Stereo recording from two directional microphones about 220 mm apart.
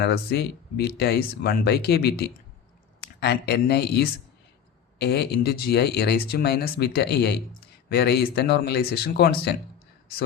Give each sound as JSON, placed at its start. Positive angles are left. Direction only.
{"t": 0.0, "sound": "speech", "side_deg": 50}